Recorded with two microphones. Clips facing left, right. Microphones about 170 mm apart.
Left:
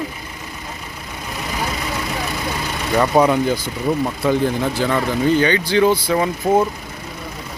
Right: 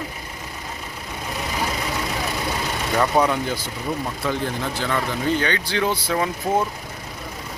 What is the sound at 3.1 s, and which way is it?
Speech, 15° left (ahead or behind).